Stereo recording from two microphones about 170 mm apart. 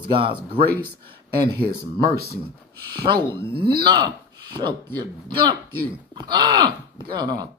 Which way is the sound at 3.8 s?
25° right (ahead or behind).